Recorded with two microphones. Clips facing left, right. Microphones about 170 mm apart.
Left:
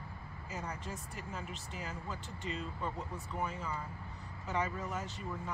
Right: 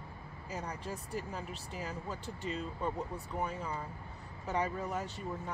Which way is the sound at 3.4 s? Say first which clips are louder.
Right 1 dB; 35° right (ahead or behind).